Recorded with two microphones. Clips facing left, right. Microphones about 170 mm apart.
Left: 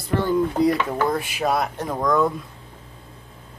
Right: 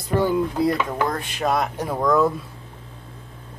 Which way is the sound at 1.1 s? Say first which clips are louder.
Left 1 dB; 5° left (ahead or behind).